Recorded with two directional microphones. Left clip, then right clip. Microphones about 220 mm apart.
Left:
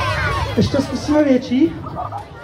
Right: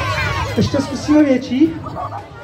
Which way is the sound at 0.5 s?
15° right (ahead or behind).